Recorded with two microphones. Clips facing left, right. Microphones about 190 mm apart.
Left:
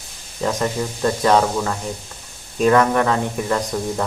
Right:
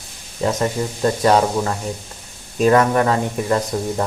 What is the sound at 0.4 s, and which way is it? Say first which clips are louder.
Speech: right 2 dB; 20° right (ahead or behind).